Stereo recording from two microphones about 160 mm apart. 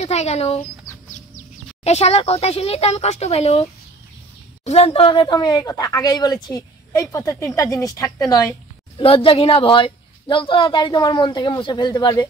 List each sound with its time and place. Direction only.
0.0 s speech: 45° left (ahead or behind)
1.9 s speech: 40° left (ahead or behind)
4.6 s speech: 40° left (ahead or behind); by 8.5 s 20° left (ahead or behind)
8.9 s speech: 35° left (ahead or behind)